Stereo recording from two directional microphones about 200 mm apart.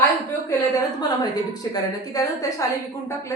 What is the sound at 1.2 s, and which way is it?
Speech, 20° left (ahead or behind).